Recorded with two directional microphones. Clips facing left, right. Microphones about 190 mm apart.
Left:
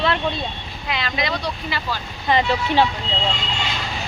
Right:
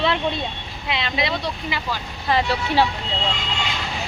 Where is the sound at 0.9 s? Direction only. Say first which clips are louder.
Right 1 dB; 25° right (ahead or behind).